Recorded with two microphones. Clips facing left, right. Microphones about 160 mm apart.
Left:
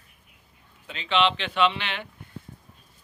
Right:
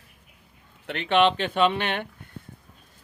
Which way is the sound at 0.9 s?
60° right (ahead or behind).